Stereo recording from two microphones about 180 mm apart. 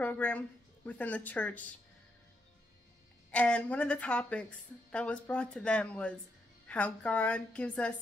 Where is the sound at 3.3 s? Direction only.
5° left (ahead or behind).